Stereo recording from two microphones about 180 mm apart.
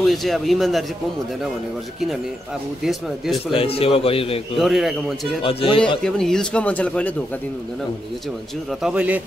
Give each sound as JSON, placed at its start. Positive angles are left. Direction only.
{"t": 0.0, "sound": "a man's voice", "side_deg": 0}
{"t": 2.8, "sound": "a man's voice", "side_deg": 0}
{"t": 3.5, "sound": "a man's voice", "side_deg": 30}
{"t": 4.6, "sound": "a man's voice", "side_deg": 0}
{"t": 5.4, "sound": "a man's voice", "side_deg": 30}
{"t": 6.0, "sound": "speech", "side_deg": 5}
{"t": 8.8, "sound": "speech", "side_deg": -10}